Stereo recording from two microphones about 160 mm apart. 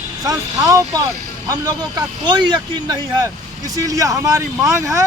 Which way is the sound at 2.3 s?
25° right (ahead or behind).